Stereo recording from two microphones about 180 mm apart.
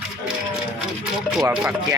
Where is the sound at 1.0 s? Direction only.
5° right (ahead or behind).